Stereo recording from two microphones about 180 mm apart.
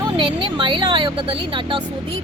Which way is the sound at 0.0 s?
25° right (ahead or behind).